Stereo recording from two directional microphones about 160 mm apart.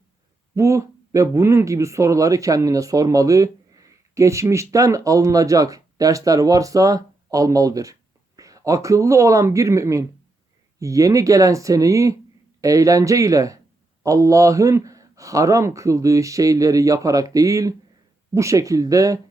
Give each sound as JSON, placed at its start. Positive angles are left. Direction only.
{"t": 0.5, "sound": "speech", "side_deg": -20}